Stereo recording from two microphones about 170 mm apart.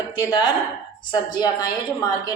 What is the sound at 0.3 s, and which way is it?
Speech, 25° left (ahead or behind).